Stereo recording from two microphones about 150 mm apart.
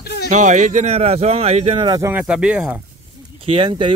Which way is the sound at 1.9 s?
20° right (ahead or behind).